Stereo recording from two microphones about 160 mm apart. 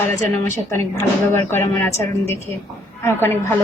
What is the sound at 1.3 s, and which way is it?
Speech, 15° left (ahead or behind).